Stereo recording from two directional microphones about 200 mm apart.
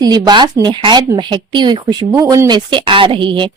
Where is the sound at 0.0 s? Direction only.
20° right (ahead or behind).